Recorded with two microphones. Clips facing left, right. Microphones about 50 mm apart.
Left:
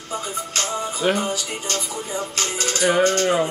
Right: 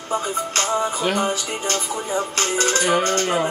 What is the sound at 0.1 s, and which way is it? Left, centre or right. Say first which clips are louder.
Speech: right 4 dB; right.